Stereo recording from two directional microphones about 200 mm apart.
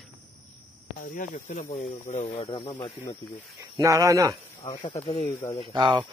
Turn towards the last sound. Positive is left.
turn(degrees=-25)  # may be behind; listen again after turning